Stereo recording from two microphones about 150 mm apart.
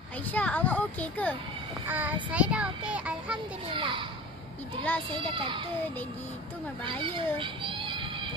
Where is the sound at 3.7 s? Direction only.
35° right (ahead or behind).